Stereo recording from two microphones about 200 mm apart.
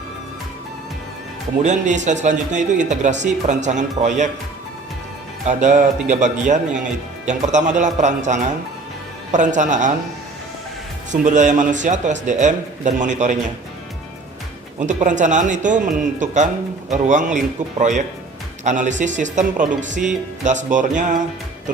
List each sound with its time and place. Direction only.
1.6 s a man's voice: 35° right (ahead or behind)
5.5 s a man's voice: 35° right (ahead or behind)
11.1 s a man's voice: 40° right (ahead or behind)
14.8 s a man's voice: 40° right (ahead or behind)